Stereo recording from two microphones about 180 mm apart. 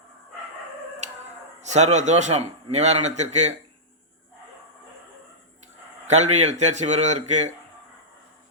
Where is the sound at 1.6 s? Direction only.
40° right (ahead or behind).